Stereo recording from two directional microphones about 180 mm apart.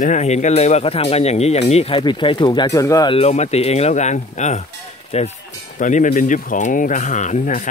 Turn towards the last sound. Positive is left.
turn(degrees=45)  # may be behind; listen again after turning